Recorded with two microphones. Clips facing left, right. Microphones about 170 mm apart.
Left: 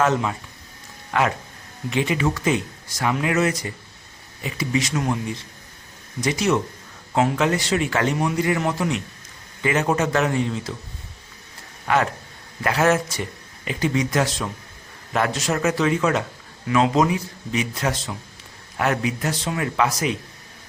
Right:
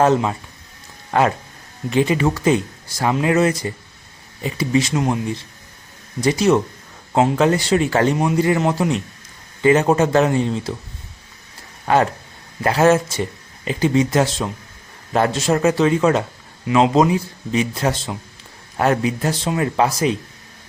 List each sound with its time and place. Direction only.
0.0 s speech: 30° right (ahead or behind)
6.2 s speech: 30° right (ahead or behind)
11.9 s speech: 35° right (ahead or behind)